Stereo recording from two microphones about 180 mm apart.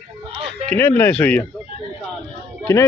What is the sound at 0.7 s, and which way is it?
Speech, 10° left (ahead or behind).